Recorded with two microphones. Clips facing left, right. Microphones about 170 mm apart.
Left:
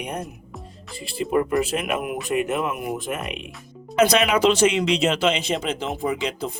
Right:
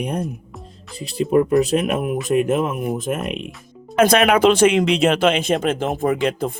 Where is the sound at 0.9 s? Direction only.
Centre (ahead or behind).